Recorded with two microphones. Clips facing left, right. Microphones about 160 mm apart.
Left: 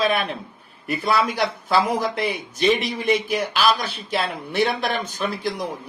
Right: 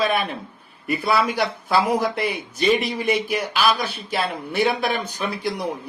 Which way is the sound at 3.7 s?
55° right (ahead or behind).